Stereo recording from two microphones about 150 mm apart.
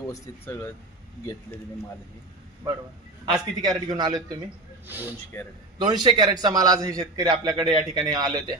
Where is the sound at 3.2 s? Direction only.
30° right (ahead or behind).